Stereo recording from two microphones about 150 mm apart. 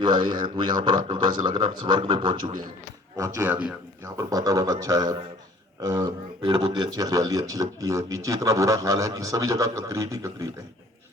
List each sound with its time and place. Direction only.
0.0 s speech: 30° right (ahead or behind)
3.4 s a man's voice: 10° right (ahead or behind)
4.2 s speech: 25° right (ahead or behind)